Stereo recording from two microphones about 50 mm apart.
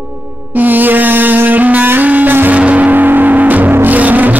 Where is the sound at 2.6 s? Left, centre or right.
Right.